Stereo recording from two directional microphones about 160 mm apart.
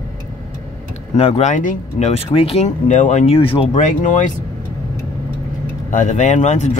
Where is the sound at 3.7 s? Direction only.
50° left (ahead or behind).